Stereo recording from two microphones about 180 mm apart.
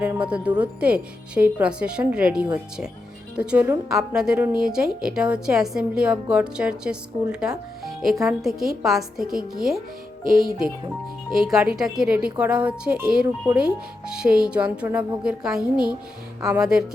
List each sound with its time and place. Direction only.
0.0 s a woman's voice: 5° right (ahead or behind)
10.2 s speech: 50° right (ahead or behind)
11.3 s a woman's voice: 5° right (ahead or behind)